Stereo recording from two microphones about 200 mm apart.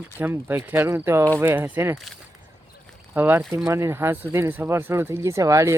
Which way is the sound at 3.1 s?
10° right (ahead or behind).